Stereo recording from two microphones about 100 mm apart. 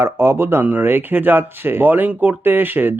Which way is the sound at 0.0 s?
25° right (ahead or behind).